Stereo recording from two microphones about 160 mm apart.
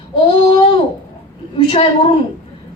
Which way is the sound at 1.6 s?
30° left (ahead or behind).